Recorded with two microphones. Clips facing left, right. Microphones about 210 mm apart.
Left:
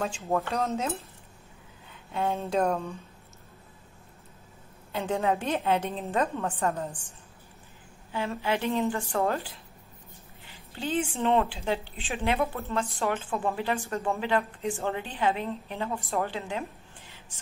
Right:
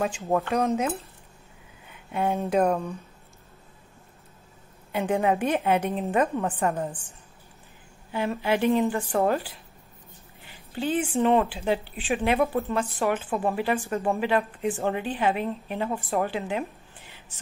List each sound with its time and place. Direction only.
0.0 s a woman's voice: 15° right (ahead or behind)
1.9 s speech: 15° right (ahead or behind)
4.9 s a woman's voice: 15° right (ahead or behind)
8.1 s a woman's voice: 15° right (ahead or behind)